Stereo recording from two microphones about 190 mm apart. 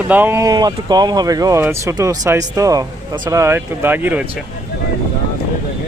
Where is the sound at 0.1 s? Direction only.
10° right (ahead or behind).